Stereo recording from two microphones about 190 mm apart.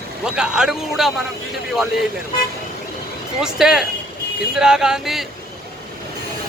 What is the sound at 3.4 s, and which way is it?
Speech, 5° right (ahead or behind).